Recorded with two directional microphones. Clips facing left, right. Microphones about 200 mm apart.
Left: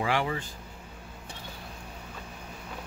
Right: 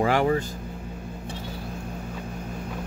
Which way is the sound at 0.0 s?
45° right (ahead or behind).